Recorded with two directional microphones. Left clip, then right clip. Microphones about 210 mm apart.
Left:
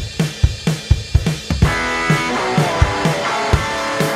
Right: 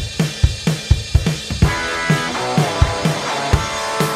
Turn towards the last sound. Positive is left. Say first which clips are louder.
# left 1 dB
turn(degrees=0)  # may be behind; listen again after turning